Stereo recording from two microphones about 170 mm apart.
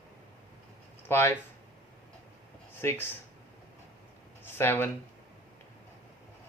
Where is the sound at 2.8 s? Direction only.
15° left (ahead or behind).